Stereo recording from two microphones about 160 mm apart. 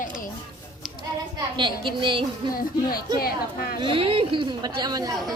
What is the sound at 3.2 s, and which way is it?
Speech, 70° left (ahead or behind).